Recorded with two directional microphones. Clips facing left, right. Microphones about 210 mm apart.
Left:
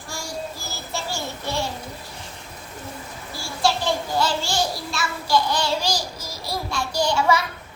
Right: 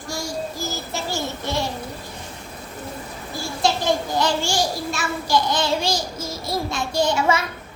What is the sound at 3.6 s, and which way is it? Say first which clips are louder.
Child singing: right 1 dB; 15° right (ahead or behind).